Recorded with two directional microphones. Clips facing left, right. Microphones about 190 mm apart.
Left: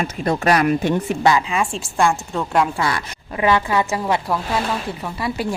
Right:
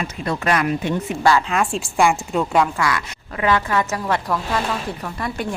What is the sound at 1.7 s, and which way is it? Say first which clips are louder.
Speech: right 2 dB; 10° right (ahead or behind).